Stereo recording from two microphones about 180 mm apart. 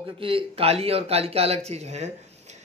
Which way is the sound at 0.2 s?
30° right (ahead or behind).